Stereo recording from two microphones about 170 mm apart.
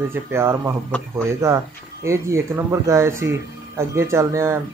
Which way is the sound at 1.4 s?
15° right (ahead or behind).